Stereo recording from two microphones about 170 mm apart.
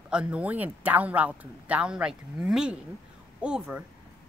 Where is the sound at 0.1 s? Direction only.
5° right (ahead or behind).